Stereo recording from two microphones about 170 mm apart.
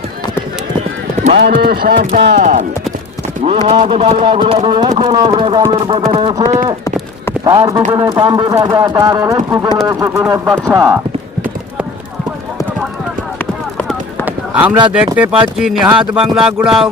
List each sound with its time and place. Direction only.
1.4 s speech: 65° right (ahead or behind)
2.4 s speech: 45° right (ahead or behind)
3.7 s speech: 40° right (ahead or behind); by 10.2 s 20° right (ahead or behind)
10.2 s speech: 5° right (ahead or behind)
13.7 s a sound: 10° left (ahead or behind)
14.3 s a sound: 10° right (ahead or behind)
14.9 s speech: 10° right (ahead or behind)